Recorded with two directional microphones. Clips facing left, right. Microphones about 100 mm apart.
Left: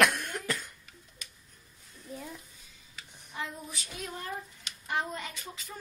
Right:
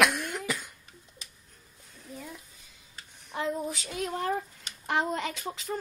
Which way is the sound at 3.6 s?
80° right.